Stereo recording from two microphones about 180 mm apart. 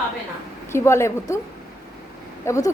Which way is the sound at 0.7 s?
15° left (ahead or behind).